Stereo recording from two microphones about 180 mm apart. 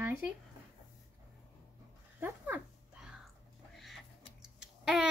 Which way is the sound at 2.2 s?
10° right (ahead or behind).